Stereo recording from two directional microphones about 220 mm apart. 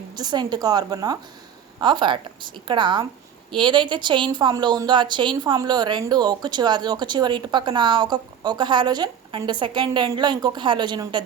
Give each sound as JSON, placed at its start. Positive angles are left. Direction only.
{"t": 0.2, "sound": "a woman's voice", "side_deg": -20}